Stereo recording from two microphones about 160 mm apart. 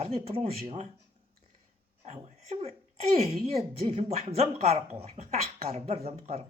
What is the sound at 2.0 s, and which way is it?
Speech, 40° right (ahead or behind).